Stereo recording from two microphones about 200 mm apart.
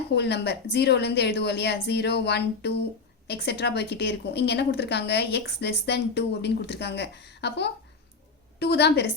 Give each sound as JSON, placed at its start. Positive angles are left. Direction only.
{"t": 0.1, "sound": "a woman's voice", "side_deg": 55}